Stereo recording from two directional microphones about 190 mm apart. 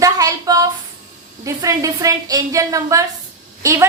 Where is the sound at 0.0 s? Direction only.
20° right (ahead or behind).